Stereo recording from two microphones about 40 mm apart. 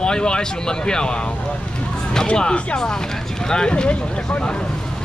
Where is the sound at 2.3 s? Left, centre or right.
Left.